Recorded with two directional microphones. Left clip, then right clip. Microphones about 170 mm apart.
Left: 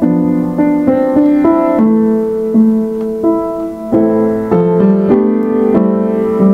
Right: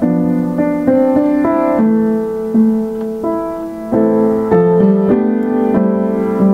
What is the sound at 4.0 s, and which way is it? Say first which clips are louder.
Music: right 1 dB; 30° left (ahead or behind).